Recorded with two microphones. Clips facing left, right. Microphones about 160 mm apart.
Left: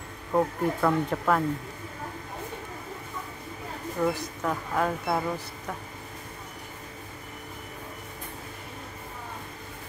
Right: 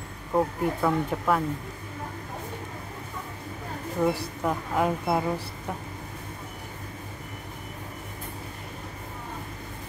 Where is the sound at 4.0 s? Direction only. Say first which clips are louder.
Right 2 dB; 15° right (ahead or behind).